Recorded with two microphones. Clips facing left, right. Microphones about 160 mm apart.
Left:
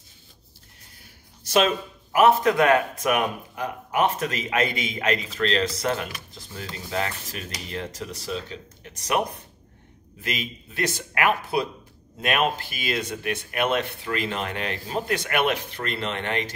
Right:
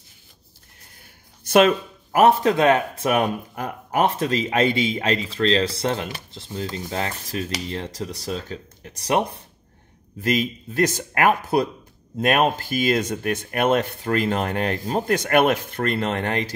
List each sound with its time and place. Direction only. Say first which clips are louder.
1.4 s a sound: right 5 dB; 55° right (ahead or behind)
2.1 s speech: right 2 dB; 35° right (ahead or behind)
3.5 s speech: even; 45° right (ahead or behind)
10.2 s speech: right 9 dB; 40° right (ahead or behind)